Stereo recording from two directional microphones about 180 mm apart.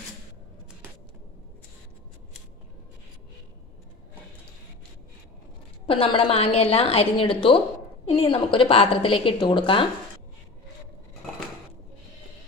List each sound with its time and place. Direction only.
5.9 s a woman's voice: 30° left (ahead or behind)